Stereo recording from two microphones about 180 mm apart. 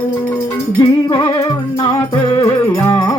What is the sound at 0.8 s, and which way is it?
Music, 20° left (ahead or behind).